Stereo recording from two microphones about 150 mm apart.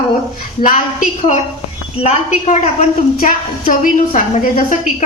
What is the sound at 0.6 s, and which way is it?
Speech, 60° left (ahead or behind).